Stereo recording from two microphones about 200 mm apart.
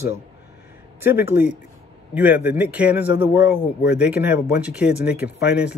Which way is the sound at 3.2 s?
60° left (ahead or behind).